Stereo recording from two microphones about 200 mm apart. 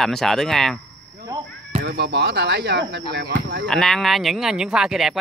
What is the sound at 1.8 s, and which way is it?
Speech, 55° right (ahead or behind).